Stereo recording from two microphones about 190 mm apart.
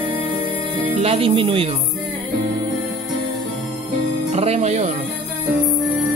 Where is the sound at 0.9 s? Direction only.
30° right (ahead or behind).